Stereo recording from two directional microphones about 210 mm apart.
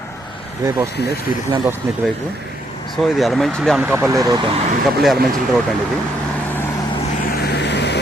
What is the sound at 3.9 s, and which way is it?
Speech, 15° right (ahead or behind).